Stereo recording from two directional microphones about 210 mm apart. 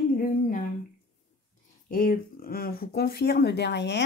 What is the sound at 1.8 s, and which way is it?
Speech, 45° left (ahead or behind).